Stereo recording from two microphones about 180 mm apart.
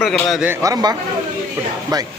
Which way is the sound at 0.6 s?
20° right (ahead or behind).